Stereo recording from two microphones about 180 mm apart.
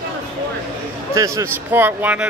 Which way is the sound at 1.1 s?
15° right (ahead or behind).